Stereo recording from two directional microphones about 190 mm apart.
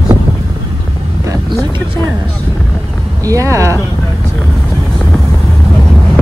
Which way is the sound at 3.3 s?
15° right (ahead or behind).